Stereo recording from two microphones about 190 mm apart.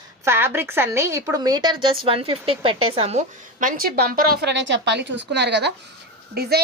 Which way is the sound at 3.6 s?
50° right (ahead or behind).